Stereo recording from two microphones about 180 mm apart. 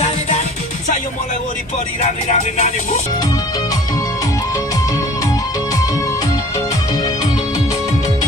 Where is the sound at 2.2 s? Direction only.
40° left (ahead or behind).